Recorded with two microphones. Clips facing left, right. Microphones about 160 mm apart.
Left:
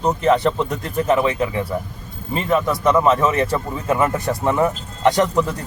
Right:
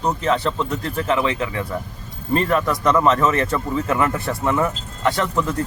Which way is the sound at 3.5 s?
25° left (ahead or behind).